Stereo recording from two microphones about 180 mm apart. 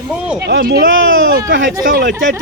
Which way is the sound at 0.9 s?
90° right.